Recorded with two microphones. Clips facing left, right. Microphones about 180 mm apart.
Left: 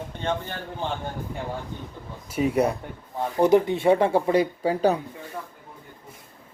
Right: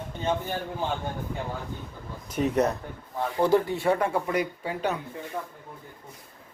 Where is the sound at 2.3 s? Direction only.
10° left (ahead or behind); by 4.9 s 35° left (ahead or behind).